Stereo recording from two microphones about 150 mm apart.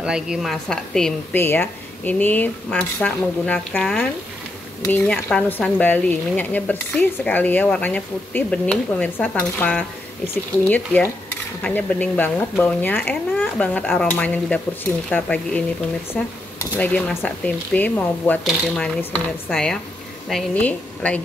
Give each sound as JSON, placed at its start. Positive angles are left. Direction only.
{"t": 0.0, "sound": "speech", "side_deg": -5}
{"t": 1.3, "sound": "speech", "side_deg": 15}
{"t": 4.9, "sound": "speech", "side_deg": 10}